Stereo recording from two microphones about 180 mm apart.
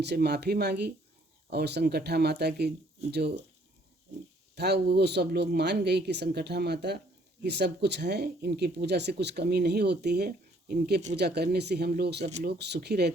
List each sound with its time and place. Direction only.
0.0 s speech: 65° right (ahead or behind)
4.5 s speech: 65° right (ahead or behind)